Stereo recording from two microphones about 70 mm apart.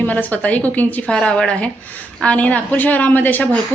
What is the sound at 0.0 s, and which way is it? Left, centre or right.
A woman's voice, left.